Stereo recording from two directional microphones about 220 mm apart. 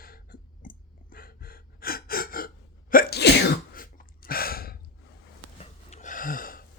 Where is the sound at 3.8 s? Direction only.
40° left (ahead or behind).